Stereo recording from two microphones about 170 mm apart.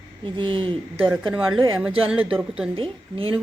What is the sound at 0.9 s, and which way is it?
Speech, 10° right (ahead or behind).